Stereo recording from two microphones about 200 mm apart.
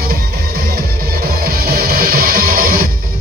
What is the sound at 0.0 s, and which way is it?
Music, 50° right (ahead or behind).